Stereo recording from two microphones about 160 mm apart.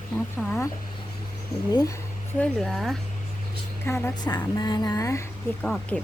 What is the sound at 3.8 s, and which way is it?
Speech, 15° left (ahead or behind).